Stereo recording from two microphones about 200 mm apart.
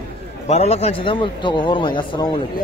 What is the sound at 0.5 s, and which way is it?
A man's voice, 30° left (ahead or behind).